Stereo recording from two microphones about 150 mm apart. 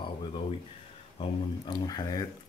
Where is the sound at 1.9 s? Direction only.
25° left (ahead or behind).